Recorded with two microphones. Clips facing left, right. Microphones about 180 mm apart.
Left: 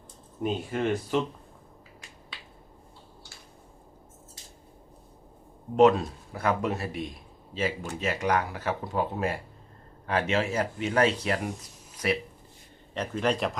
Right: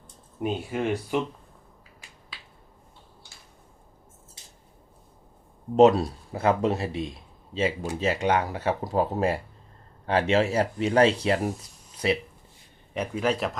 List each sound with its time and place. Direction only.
0.4 s speech: 5° right (ahead or behind)
5.7 s speech: 30° right (ahead or behind)
12.9 s speech: 10° right (ahead or behind)